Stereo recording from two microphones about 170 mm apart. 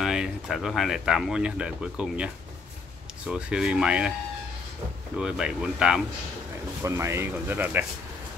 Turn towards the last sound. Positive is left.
turn(degrees=-10)  # may be behind; listen again after turning